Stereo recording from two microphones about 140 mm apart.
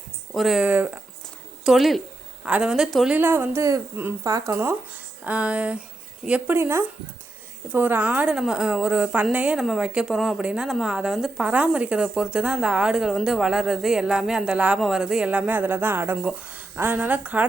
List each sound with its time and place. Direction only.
0.3 s a woman's voice: centre (ahead or behind)
3.2 s speech: 15° right (ahead or behind)
5.2 s a woman's voice: 10° right (ahead or behind)